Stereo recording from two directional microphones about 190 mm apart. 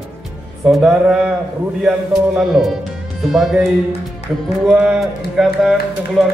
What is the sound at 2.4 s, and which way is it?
Music, centre (ahead or behind).